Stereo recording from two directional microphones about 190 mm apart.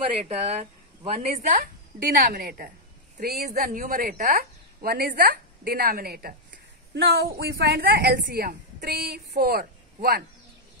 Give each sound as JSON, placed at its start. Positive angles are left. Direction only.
{"t": 0.3, "sound": "a woman's voice", "side_deg": -35}